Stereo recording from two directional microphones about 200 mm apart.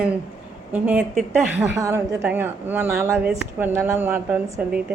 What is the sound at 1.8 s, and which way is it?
A woman's voice, 15° right (ahead or behind).